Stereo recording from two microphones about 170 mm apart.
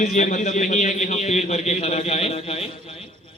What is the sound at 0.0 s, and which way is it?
A man's voice, 45° left (ahead or behind).